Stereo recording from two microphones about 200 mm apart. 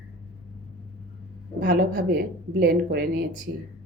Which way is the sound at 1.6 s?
50° right (ahead or behind).